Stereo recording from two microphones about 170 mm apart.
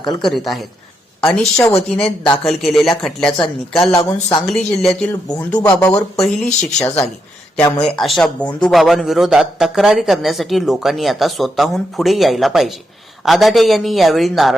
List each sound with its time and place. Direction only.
0.2 s a man's voice: centre (ahead or behind)
5.3 s speech: 15° left (ahead or behind)
6.2 s a man's voice: 5° left (ahead or behind)